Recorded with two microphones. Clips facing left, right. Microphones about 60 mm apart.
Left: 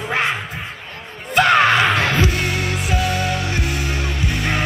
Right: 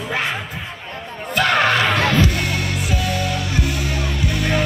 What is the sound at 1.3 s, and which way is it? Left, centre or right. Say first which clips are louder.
Music: left 3 dB; centre.